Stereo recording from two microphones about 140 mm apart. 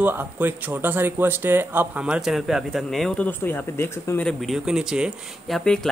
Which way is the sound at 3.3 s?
15° left (ahead or behind).